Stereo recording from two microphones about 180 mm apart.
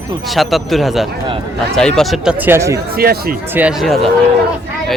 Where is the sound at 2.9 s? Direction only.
55° right (ahead or behind).